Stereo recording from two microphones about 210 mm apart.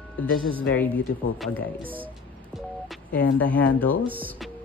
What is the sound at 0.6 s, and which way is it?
Speech, 5° left (ahead or behind).